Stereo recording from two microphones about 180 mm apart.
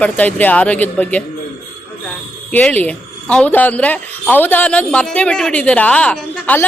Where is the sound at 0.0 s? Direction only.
10° left (ahead or behind).